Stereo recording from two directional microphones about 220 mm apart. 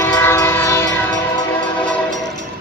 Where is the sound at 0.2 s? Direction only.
10° left (ahead or behind).